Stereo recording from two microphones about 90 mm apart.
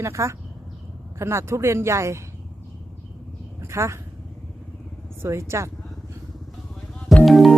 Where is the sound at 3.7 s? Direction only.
30° right (ahead or behind).